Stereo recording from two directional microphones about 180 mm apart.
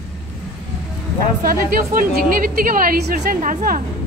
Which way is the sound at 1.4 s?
50° right (ahead or behind).